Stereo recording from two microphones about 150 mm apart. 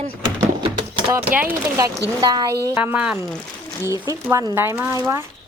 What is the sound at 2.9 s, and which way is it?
Speech, 5° right (ahead or behind).